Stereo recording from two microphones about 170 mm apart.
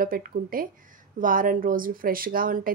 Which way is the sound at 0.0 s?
55° right (ahead or behind).